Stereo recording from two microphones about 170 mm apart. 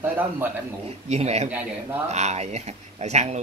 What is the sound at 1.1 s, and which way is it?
Speech, 40° right (ahead or behind).